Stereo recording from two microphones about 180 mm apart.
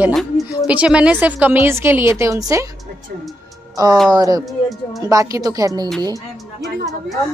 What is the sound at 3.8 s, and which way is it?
Speech, 20° right (ahead or behind).